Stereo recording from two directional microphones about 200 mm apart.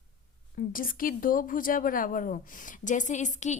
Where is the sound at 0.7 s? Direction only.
45° left (ahead or behind).